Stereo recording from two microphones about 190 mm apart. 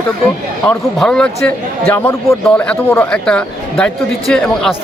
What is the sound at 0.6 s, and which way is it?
A man's voice, 5° left (ahead or behind).